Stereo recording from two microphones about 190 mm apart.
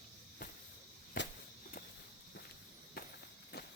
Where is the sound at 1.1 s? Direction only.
45° left (ahead or behind).